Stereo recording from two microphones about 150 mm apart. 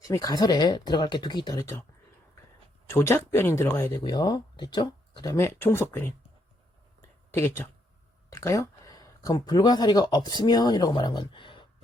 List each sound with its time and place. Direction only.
0.0 s speech: 25° left (ahead or behind)
2.9 s speech: 15° left (ahead or behind)
7.3 s speech: 15° left (ahead or behind); by 11.6 s 35° left (ahead or behind)